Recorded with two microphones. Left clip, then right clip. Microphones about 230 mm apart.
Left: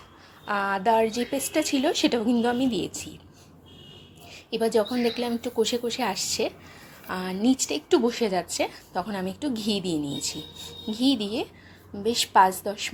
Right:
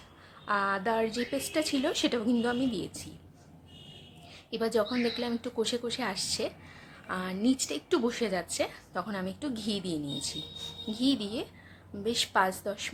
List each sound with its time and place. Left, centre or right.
0.4 s a woman's voice: centre
4.3 s a woman's voice: centre